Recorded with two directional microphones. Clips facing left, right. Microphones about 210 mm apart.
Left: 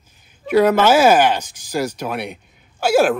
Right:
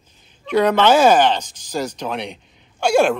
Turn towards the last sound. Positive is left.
turn(degrees=5)  # may be behind; listen again after turning